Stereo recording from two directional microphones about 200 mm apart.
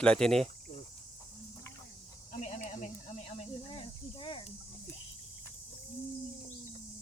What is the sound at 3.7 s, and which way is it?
Cricket, 25° left (ahead or behind).